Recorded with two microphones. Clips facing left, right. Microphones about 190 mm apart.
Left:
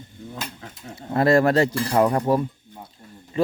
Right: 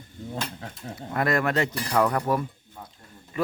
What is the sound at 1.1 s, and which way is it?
Speech, 30° left (ahead or behind).